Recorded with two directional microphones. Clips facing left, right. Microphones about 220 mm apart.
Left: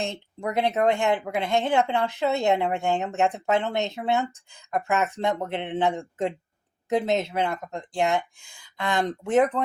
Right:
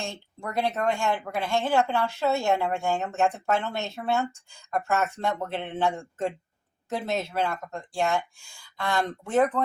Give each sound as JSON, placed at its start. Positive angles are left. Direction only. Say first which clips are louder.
{"t": 0.0, "sound": "speech", "louder": "left 5 dB", "side_deg": 20}